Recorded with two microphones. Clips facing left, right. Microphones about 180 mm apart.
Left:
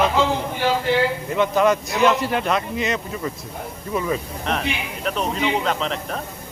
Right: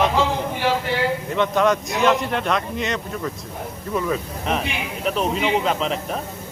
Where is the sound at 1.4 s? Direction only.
5° left (ahead or behind).